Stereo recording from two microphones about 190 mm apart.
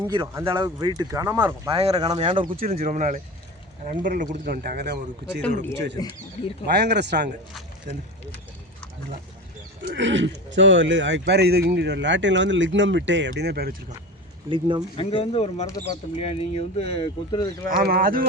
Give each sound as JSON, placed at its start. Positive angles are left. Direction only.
{"t": 0.1, "sound": "speech", "side_deg": -25}
{"t": 1.7, "sound": "speech", "side_deg": -30}
{"t": 2.6, "sound": "speech", "side_deg": -45}
{"t": 6.0, "sound": "speech", "side_deg": 20}
{"t": 6.7, "sound": "speech", "side_deg": -60}
{"t": 9.8, "sound": "speech", "side_deg": -70}
{"t": 14.5, "sound": "speech", "side_deg": -25}
{"t": 14.9, "sound": "speech", "side_deg": 30}
{"t": 17.7, "sound": "speech", "side_deg": -50}